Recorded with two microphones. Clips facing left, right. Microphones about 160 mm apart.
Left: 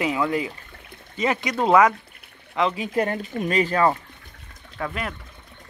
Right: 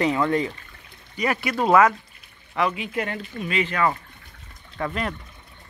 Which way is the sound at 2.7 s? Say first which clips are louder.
Left 5 dB; 40° left (ahead or behind).